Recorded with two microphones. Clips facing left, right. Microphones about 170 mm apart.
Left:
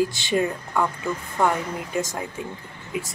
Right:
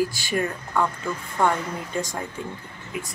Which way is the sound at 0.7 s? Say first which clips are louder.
Right 2 dB; 10° left (ahead or behind).